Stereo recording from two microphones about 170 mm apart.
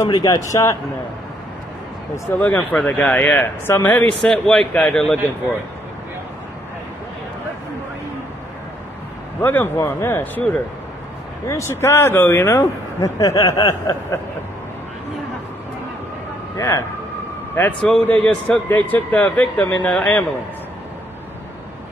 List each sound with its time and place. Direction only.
0.0 s speech: 20° left (ahead or behind)
2.3 s speech: 10° left (ahead or behind)
9.4 s speech: 10° left (ahead or behind)
16.5 s a man's voice: 15° left (ahead or behind)
18.0 s speech: 5° left (ahead or behind)